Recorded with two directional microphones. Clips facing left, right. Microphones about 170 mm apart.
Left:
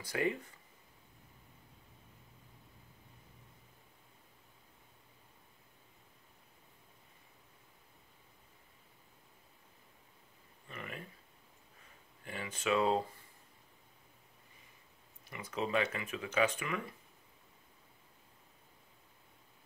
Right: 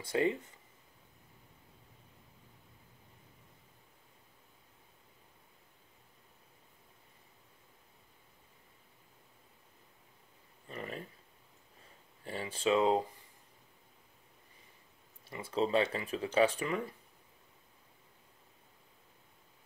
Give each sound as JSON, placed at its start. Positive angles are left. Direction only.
{"t": 0.0, "sound": "speech", "side_deg": -25}
{"t": 10.7, "sound": "a sound", "side_deg": -35}
{"t": 12.3, "sound": "speech", "side_deg": -30}
{"t": 15.5, "sound": "speech", "side_deg": -30}